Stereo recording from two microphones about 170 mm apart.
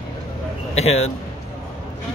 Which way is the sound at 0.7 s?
40° left (ahead or behind).